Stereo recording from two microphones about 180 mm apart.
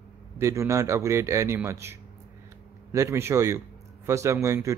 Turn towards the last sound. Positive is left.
turn(degrees=-15)  # may be behind; listen again after turning